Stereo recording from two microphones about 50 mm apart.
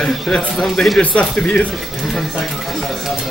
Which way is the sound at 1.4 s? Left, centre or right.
Left.